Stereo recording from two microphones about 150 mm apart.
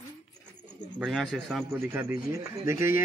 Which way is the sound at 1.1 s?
Centre (ahead or behind).